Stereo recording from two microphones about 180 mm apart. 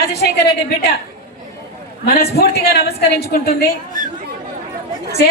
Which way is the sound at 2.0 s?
60° left (ahead or behind).